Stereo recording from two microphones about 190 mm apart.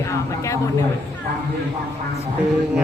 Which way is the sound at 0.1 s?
15° left (ahead or behind).